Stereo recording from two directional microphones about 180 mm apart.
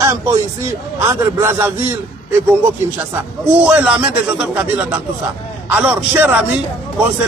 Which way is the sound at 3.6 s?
5° right (ahead or behind).